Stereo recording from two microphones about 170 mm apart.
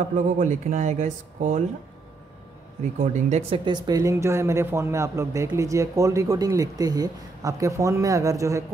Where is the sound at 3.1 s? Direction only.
45° right (ahead or behind).